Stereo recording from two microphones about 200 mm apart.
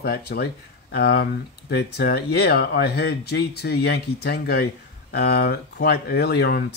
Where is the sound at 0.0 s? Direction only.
50° left (ahead or behind).